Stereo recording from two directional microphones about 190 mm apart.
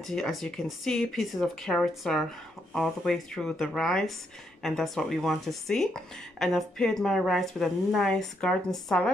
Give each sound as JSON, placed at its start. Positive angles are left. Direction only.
{"t": 0.0, "sound": "speech", "side_deg": 0}